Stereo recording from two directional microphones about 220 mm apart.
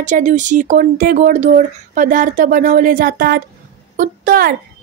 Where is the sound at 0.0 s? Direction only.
35° right (ahead or behind).